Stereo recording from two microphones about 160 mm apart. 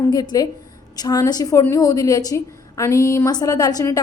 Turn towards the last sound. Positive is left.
turn(degrees=20)  # may be behind; listen again after turning